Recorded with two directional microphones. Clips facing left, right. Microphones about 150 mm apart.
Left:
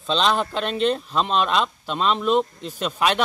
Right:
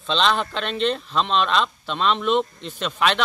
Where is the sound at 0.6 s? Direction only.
45° left (ahead or behind).